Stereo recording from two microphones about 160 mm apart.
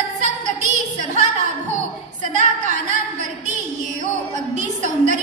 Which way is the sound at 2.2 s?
50° right (ahead or behind).